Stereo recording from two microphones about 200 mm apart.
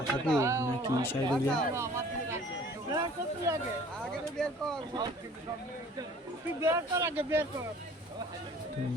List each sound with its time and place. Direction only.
0.3 s speech: 15° right (ahead or behind)
1.0 s speech: 5° left (ahead or behind)
1.7 s a sound: 15° right (ahead or behind)
4.4 s speech: centre (ahead or behind)
6.6 s speech: 15° right (ahead or behind)